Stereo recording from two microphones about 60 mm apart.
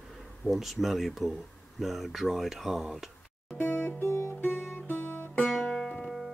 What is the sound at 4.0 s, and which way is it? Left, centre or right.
Music, left.